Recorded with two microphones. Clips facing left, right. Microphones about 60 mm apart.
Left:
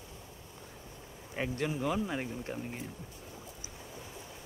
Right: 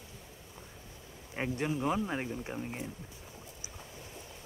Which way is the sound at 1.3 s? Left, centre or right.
Centre.